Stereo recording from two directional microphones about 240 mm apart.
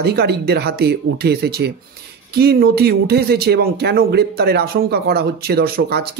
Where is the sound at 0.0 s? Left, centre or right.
Right.